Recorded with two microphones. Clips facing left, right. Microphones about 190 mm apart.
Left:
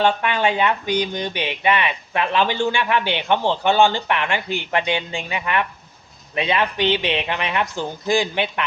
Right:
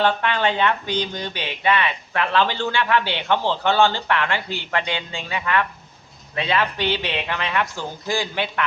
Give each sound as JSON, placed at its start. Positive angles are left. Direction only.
{"t": 0.0, "sound": "speech", "side_deg": 15}